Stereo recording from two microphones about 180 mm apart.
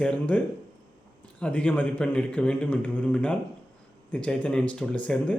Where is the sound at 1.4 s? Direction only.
5° left (ahead or behind).